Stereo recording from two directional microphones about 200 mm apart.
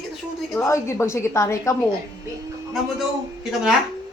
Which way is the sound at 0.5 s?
15° left (ahead or behind).